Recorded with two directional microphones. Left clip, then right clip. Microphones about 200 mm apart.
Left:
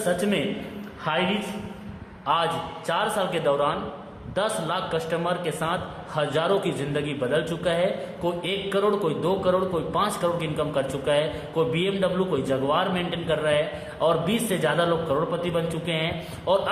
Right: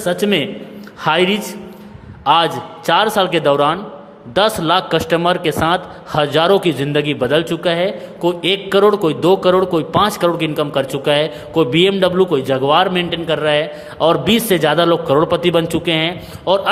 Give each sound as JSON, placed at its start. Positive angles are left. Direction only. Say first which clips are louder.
{"t": 0.0, "sound": "a man's voice", "louder": "right 8 dB", "side_deg": -45}
{"t": 2.2, "sound": "a man's voice", "louder": "right 10 dB", "side_deg": -45}